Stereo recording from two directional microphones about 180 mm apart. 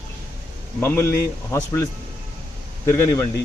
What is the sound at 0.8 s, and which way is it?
Speech, 15° left (ahead or behind).